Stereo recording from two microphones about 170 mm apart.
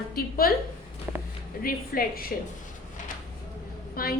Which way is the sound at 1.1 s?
10° right (ahead or behind).